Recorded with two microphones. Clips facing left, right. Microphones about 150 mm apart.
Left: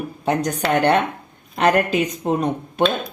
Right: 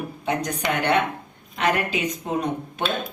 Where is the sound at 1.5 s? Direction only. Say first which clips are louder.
Left 6 dB; 40° left (ahead or behind).